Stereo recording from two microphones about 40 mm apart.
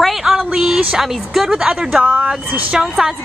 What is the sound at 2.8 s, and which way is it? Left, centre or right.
Speech, centre.